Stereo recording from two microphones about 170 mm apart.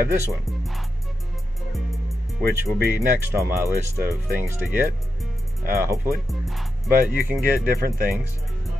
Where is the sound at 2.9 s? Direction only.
15° right (ahead or behind).